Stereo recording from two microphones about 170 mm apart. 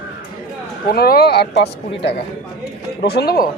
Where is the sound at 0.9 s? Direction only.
60° left (ahead or behind).